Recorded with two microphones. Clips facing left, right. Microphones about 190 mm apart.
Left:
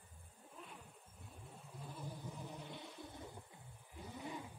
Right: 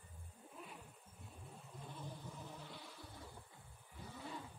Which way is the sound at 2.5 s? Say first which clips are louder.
Left 3 dB; 20° left (ahead or behind).